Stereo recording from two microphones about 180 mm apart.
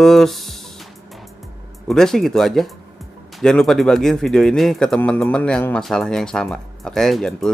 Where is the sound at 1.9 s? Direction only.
Centre (ahead or behind).